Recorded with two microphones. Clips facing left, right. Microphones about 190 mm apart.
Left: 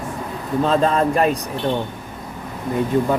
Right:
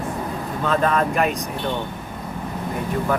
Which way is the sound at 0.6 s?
30° left (ahead or behind).